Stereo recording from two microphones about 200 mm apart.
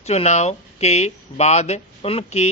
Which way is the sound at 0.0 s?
35° left (ahead or behind).